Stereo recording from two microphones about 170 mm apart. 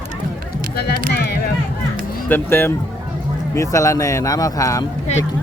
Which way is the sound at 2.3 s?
15° left (ahead or behind).